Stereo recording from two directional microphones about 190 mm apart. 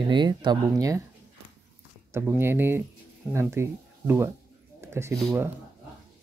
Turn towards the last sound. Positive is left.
turn(degrees=-15)  # may be behind; listen again after turning